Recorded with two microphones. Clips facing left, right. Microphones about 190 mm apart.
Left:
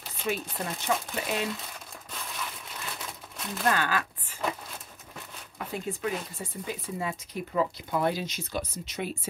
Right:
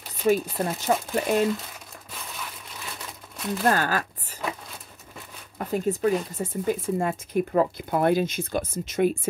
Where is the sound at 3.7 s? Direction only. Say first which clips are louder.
Right 3 dB; 40° right (ahead or behind).